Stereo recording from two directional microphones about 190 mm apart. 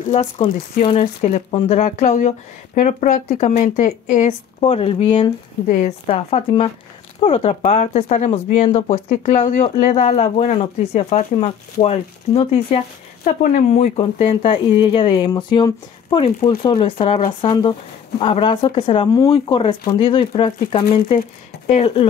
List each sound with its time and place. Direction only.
0.1 s speech: 35° left (ahead or behind)
5.7 s speech: 40° left (ahead or behind)
6.0 s speech: 30° left (ahead or behind)